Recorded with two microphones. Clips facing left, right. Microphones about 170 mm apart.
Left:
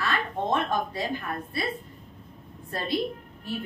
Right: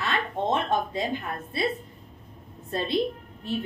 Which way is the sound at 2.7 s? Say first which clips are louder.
Right 4 dB; 25° right (ahead or behind).